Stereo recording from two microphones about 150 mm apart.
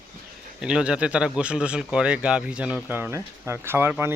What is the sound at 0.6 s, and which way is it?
Speech, 5° right (ahead or behind).